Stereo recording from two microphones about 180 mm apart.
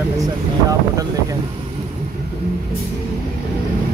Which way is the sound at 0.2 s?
20° right (ahead or behind).